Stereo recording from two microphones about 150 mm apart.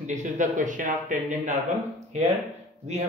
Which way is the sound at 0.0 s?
55° right (ahead or behind).